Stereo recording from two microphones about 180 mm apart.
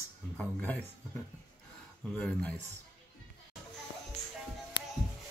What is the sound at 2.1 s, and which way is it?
Speech, 5° left (ahead or behind).